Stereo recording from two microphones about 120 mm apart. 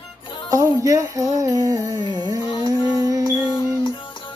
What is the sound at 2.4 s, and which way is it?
Music, 35° left (ahead or behind).